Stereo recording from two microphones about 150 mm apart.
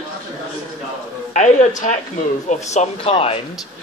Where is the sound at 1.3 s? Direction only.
55° left (ahead or behind).